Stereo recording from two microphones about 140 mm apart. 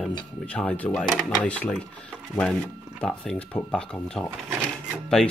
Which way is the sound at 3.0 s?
5° left (ahead or behind).